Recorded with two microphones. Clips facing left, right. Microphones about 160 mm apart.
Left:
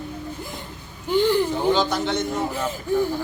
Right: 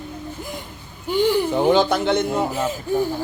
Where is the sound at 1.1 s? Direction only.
15° right (ahead or behind).